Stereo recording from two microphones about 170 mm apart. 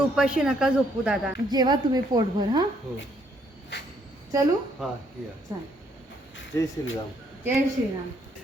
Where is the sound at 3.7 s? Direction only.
85° left.